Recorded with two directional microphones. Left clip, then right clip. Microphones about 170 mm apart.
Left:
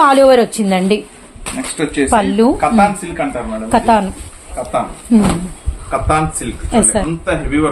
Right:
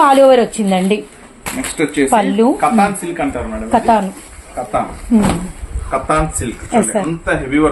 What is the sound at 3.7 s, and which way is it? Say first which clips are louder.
Speech: even; 20° left (ahead or behind).